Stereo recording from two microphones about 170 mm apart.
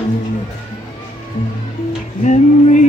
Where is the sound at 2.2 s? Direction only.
45° left (ahead or behind).